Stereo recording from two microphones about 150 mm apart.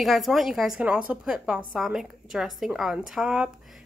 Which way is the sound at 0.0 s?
Centre (ahead or behind).